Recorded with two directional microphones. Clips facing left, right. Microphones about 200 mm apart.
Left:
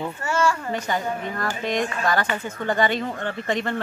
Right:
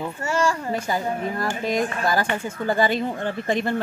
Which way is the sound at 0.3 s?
35° right (ahead or behind).